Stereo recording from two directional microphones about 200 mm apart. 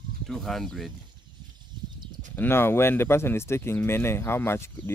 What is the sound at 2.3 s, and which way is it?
Speech, 10° left (ahead or behind).